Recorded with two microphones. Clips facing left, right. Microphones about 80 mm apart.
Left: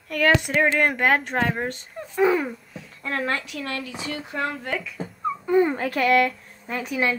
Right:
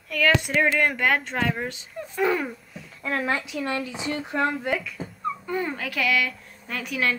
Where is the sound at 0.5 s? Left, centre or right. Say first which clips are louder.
Left 1 dB; left.